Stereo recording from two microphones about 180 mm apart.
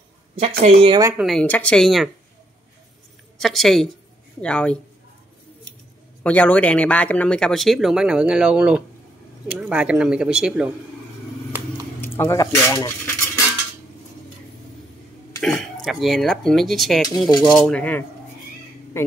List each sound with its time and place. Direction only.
0.7 s speech: 30° right (ahead or behind)
1.2 s speech: 5° left (ahead or behind)
3.3 s speech: centre (ahead or behind)
6.2 s speech: 10° left (ahead or behind)
12.0 s speech: 15° left (ahead or behind)
15.4 s speech: centre (ahead or behind)